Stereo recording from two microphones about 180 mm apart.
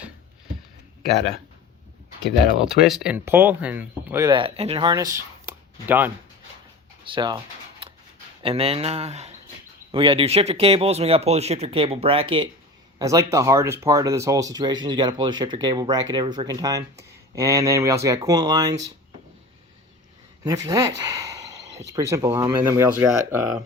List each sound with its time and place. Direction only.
2.2 s speech: centre (ahead or behind)
4.3 s speech: 30° right (ahead or behind); by 6.1 s 10° right (ahead or behind)
7.0 s speech: 25° right (ahead or behind)
8.4 s speech: 30° right (ahead or behind)
13.0 s speech: 20° right (ahead or behind)
20.4 s a sound: 20° right (ahead or behind)
21.9 s speech: 15° right (ahead or behind)